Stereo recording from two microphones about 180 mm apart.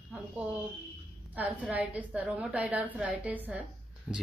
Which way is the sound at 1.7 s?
10° right (ahead or behind).